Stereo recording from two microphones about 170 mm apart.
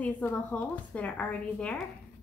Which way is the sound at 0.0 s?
10° left (ahead or behind).